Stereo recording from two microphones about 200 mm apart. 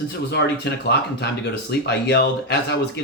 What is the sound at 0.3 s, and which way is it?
Speech, 55° left (ahead or behind).